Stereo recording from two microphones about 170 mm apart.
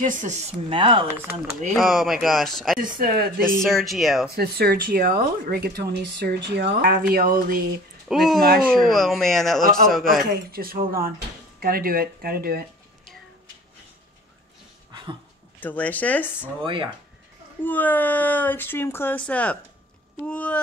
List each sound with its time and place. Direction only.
0.0 s speech: 50° right (ahead or behind); by 1.0 s 30° right (ahead or behind)
1.0 s speech: 10° right (ahead or behind)
1.7 s speech: centre (ahead or behind)
2.8 s speech: 60° right (ahead or behind)
3.6 s speech: centre (ahead or behind)
4.4 s speech: 65° right (ahead or behind); by 6.8 s 85° right
6.8 s speech: 55° right (ahead or behind)
8.1 s speech: centre (ahead or behind)
8.4 s speech: 65° right (ahead or behind)
8.6 s speech: centre (ahead or behind)
10.2 s speech: 65° right (ahead or behind)
15.6 s speech: 10° left (ahead or behind)
16.6 s speech: 30° right (ahead or behind)
17.6 s speech: 10° left (ahead or behind)